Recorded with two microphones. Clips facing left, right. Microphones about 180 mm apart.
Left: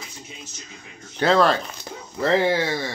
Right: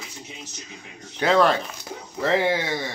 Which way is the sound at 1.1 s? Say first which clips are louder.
Left 1 dB; 15° right (ahead or behind).